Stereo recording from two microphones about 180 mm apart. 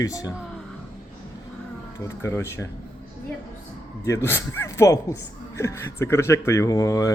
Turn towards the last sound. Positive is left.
turn(degrees=20)  # may be behind; listen again after turning